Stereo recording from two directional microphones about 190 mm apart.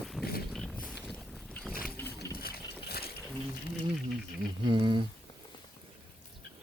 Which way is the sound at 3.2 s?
Centre (ahead or behind).